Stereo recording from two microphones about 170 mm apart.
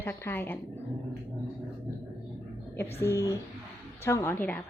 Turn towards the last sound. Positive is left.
turn(degrees=10)  # may be behind; listen again after turning